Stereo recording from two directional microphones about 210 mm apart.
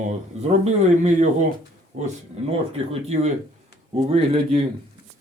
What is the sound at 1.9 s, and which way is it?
Speech, 35° right (ahead or behind).